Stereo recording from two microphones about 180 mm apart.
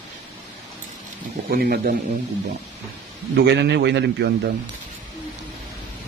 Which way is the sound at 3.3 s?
70° right (ahead or behind).